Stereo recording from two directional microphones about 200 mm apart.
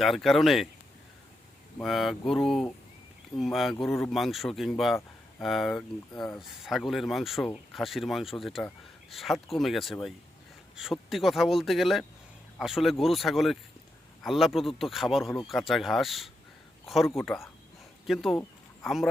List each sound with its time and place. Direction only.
0.0 s speech: centre (ahead or behind)
1.8 s speech: centre (ahead or behind)